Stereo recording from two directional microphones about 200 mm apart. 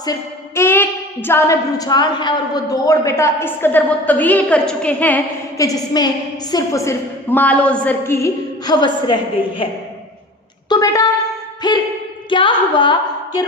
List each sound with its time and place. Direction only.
0.0 s a woman's voice: 15° left (ahead or behind)
11.6 s a sound: 20° left (ahead or behind)
12.3 s a woman's voice: 25° left (ahead or behind)